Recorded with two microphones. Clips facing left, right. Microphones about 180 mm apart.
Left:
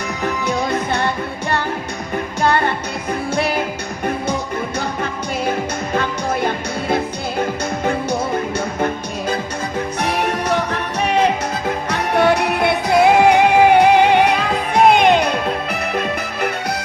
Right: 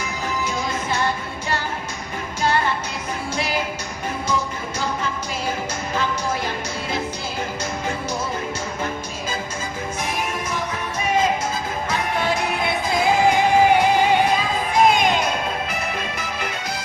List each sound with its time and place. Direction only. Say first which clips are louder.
0.0 s music: left 5 dB; 60° left (ahead or behind)
4.8 s music: left 3 dB; 60° left (ahead or behind)
10.0 s music: left 7 dB; 65° left (ahead or behind)